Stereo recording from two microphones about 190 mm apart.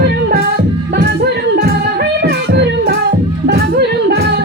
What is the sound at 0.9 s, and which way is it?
Music, 55° right (ahead or behind).